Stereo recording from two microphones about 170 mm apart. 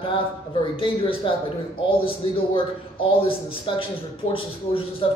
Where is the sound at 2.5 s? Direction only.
30° left (ahead or behind).